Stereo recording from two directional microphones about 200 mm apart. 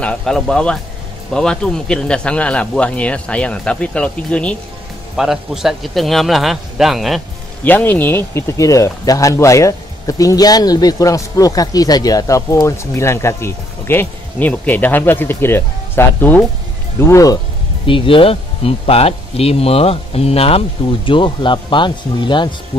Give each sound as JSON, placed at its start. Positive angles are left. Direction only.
{"t": 0.0, "sound": "speech", "side_deg": 5}
{"t": 7.6, "sound": "speech", "side_deg": 10}
{"t": 17.8, "sound": "speech", "side_deg": 25}